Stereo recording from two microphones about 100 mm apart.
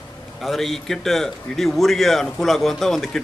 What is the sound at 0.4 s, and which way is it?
A man's voice, centre (ahead or behind).